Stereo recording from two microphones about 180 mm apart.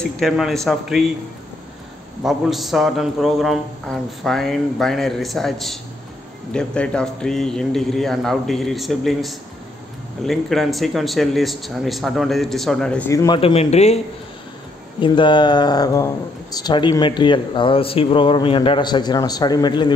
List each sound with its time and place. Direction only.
0.0 s a man's voice: centre (ahead or behind)
2.2 s a man's voice: centre (ahead or behind)
13.1 s a man's voice: 15° left (ahead or behind)
13.4 s a man's voice: 35° left (ahead or behind)